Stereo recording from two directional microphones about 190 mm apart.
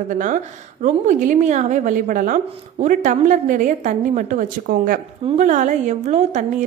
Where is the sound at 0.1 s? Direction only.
45° right (ahead or behind).